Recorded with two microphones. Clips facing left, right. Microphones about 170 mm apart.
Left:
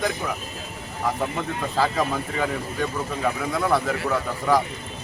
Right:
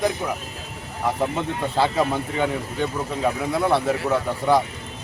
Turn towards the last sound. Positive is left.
turn(degrees=-25)  # may be behind; listen again after turning